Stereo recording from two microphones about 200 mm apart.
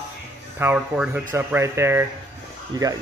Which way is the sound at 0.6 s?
10° right (ahead or behind).